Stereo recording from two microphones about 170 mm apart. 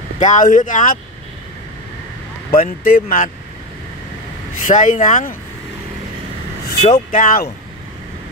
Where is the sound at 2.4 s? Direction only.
55° left (ahead or behind).